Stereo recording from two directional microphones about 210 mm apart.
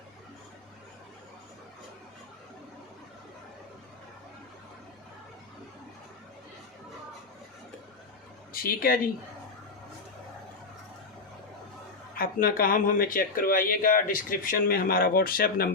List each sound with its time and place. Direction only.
8.5 s speech: 45° left (ahead or behind)
12.1 s speech: 45° left (ahead or behind)